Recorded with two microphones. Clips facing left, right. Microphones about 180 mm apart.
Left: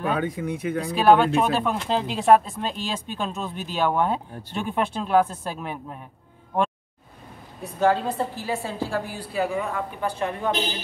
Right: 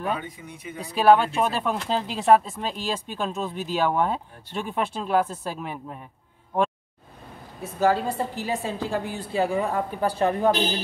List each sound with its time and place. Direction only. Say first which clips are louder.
0.1 s speech: left 6 dB; 85° left
0.9 s speech: even; 5° right (ahead or behind)
7.6 s a woman's voice: left 1 dB; 5° right (ahead or behind); by 10.5 s 35° right (ahead or behind)